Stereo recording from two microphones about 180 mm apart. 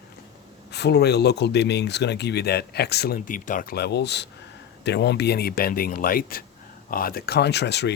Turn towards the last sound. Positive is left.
turn(degrees=70)  # may be behind; listen again after turning